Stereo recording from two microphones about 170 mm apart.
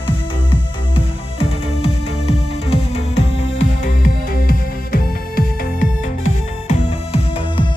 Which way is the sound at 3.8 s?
60° left (ahead or behind).